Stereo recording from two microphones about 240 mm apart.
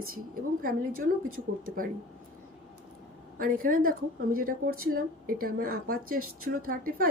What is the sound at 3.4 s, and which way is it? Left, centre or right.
A woman's voice, right.